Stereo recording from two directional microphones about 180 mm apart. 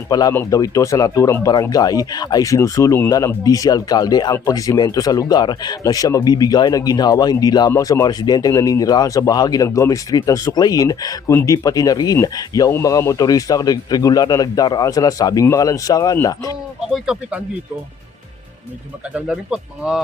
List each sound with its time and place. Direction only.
0.1 s speech: 20° left (ahead or behind)
16.9 s speech: 5° right (ahead or behind)
19.1 s speech: 5° right (ahead or behind)